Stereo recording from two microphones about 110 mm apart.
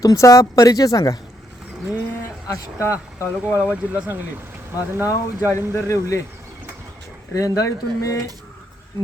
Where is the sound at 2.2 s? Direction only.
25° left (ahead or behind).